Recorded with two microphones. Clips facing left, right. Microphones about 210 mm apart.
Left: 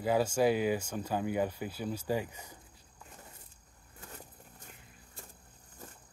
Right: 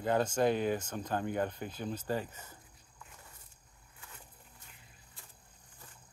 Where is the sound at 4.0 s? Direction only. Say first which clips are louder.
Left 7 dB; 45° left (ahead or behind).